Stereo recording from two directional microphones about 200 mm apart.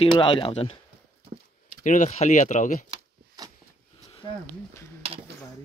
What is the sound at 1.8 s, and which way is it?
Speech, 40° left (ahead or behind).